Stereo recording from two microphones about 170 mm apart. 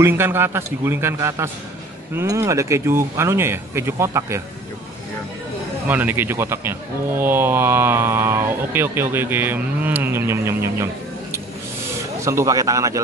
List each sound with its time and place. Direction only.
0.0 s speech: 15° right (ahead or behind)
5.9 s speech: 10° right (ahead or behind)
12.3 s speech: 20° right (ahead or behind)